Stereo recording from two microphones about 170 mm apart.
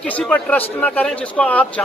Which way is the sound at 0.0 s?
5° left (ahead or behind).